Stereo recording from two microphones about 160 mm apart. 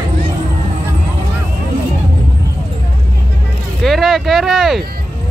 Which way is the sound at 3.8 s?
Centre (ahead or behind).